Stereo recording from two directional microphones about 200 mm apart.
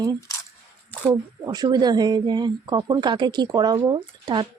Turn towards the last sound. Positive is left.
turn(degrees=-20)  # may be behind; listen again after turning